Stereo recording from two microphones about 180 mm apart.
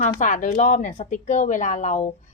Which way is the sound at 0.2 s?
45° left (ahead or behind).